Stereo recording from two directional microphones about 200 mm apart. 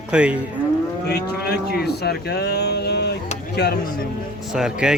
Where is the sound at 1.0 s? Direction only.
55° left (ahead or behind).